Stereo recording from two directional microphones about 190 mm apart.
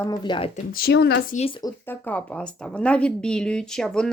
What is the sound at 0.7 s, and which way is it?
Speech, 55° left (ahead or behind).